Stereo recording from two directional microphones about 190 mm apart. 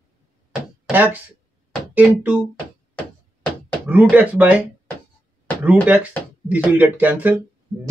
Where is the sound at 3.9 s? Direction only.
10° right (ahead or behind).